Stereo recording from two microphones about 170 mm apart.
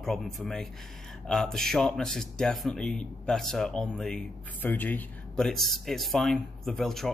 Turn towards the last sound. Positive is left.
turn(degrees=0)  # may be behind; listen again after turning